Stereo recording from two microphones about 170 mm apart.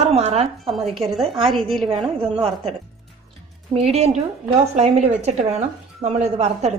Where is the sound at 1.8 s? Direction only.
30° right (ahead or behind).